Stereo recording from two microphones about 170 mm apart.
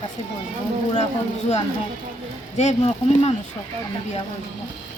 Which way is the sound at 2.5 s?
40° left (ahead or behind).